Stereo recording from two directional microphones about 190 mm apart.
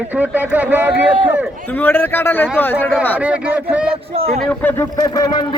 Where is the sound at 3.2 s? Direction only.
5° right (ahead or behind).